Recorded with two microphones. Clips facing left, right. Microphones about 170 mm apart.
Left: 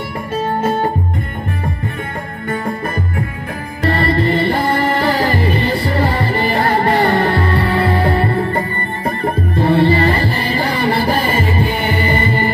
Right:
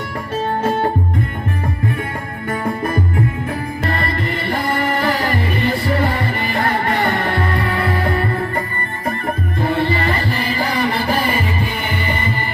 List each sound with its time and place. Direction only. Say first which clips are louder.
3.8 s music: left 9 dB; 35° left (ahead or behind)